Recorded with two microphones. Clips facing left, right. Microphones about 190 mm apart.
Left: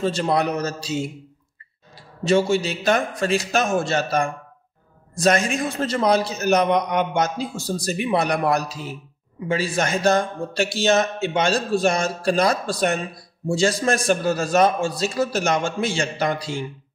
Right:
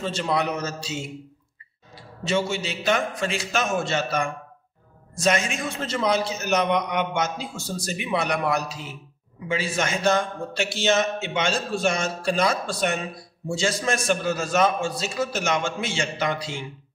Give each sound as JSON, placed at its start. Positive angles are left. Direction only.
{"t": 0.0, "sound": "a man's voice", "side_deg": 40}
{"t": 2.2, "sound": "a man's voice", "side_deg": 35}